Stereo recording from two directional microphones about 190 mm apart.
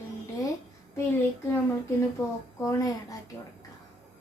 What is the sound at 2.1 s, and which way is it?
Speech, 15° left (ahead or behind).